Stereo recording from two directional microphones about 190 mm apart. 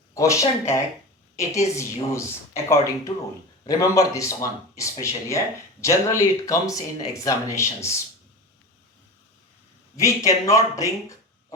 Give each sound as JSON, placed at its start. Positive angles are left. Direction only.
{"t": 0.1, "sound": "speech", "side_deg": 15}
{"t": 10.0, "sound": "speech", "side_deg": 15}